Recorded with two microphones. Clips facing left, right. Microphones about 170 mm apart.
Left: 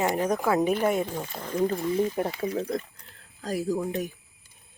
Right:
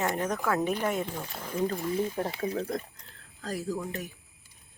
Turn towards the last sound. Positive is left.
turn(degrees=15)  # may be behind; listen again after turning